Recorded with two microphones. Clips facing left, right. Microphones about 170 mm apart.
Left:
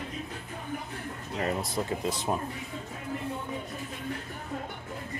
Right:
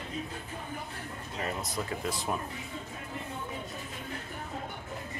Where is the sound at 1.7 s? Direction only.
25° left (ahead or behind).